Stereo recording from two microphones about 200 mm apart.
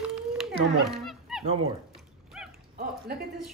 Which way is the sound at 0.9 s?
Centre (ahead or behind).